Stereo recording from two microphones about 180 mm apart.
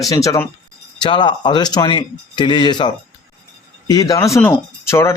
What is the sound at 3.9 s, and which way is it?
A man's voice, 20° left (ahead or behind).